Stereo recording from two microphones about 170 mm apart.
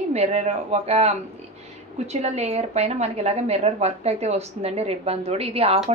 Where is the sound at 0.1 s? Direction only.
40° right (ahead or behind).